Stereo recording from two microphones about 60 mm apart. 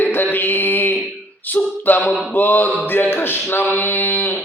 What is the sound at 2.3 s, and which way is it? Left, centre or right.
Mantra, left.